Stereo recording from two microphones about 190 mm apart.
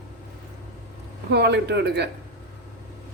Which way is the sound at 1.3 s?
60° right (ahead or behind).